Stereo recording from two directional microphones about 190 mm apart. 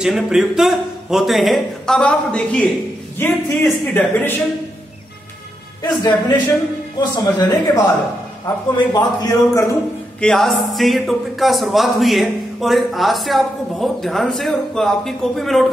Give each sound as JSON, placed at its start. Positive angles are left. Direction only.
{"t": 0.0, "sound": "a man's voice", "side_deg": -5}
{"t": 5.8, "sound": "a man's voice", "side_deg": 20}
{"t": 8.9, "sound": "a man's voice", "side_deg": 20}
{"t": 10.2, "sound": "a man's voice", "side_deg": 0}